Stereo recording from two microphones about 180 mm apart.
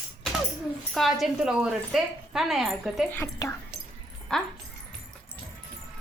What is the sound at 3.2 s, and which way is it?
Speech, 15° left (ahead or behind).